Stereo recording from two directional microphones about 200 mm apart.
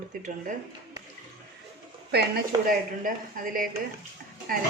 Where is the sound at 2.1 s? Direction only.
50° right (ahead or behind).